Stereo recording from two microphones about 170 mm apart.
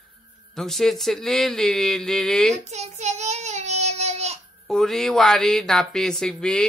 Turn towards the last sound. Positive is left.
turn(degrees=5)  # may be behind; listen again after turning